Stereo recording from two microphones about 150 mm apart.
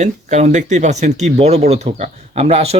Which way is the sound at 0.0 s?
50° right (ahead or behind).